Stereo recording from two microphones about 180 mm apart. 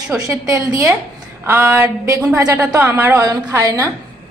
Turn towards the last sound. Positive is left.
turn(degrees=-15)  # may be behind; listen again after turning